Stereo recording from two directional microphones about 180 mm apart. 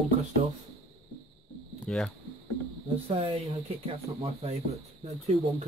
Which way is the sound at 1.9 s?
5° left (ahead or behind).